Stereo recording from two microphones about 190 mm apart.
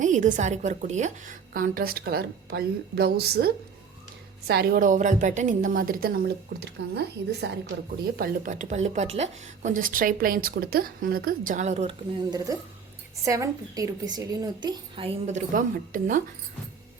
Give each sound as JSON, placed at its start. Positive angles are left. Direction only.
{"t": 0.0, "sound": "speech", "side_deg": -40}
{"t": 8.1, "sound": "speech", "side_deg": -45}
{"t": 12.3, "sound": "a woman's voice", "side_deg": -20}
{"t": 15.5, "sound": "speech", "side_deg": -45}